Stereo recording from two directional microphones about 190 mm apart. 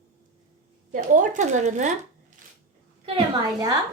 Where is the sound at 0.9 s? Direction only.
40° right (ahead or behind).